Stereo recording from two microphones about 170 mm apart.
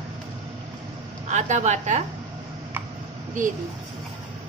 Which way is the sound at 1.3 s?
45° right (ahead or behind).